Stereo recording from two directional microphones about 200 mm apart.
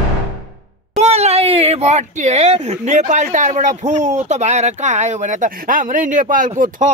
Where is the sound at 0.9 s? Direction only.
30° right (ahead or behind).